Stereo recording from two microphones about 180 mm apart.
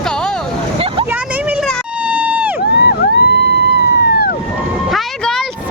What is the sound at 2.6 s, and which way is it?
Vehicle, 65° left (ahead or behind).